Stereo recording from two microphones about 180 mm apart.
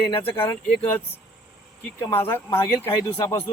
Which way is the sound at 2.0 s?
15° left (ahead or behind).